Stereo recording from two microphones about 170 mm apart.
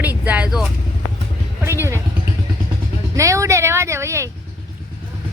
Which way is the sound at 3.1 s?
20° right (ahead or behind).